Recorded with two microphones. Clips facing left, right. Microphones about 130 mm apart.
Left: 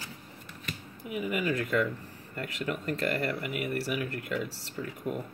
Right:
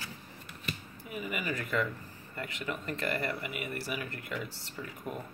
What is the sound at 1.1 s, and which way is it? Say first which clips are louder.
Speech: left 6 dB; 65° left (ahead or behind).